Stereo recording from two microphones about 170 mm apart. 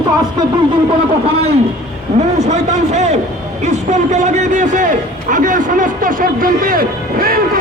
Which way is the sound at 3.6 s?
45° right (ahead or behind).